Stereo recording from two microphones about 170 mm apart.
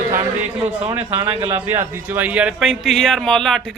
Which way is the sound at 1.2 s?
30° right (ahead or behind).